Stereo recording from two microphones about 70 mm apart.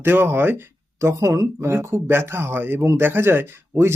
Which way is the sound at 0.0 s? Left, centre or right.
Right.